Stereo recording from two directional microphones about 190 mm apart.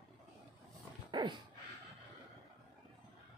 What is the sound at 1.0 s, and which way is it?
Dog, 25° right (ahead or behind).